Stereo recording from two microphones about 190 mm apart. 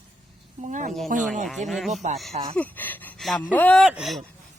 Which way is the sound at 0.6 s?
40° right (ahead or behind).